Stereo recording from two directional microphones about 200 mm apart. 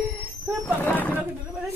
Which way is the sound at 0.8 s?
10° left (ahead or behind).